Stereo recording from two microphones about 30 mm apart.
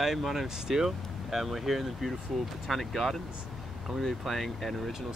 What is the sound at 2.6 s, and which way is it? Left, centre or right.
Speech, centre.